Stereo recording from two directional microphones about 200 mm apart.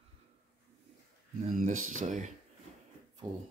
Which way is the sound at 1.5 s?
40° right (ahead or behind).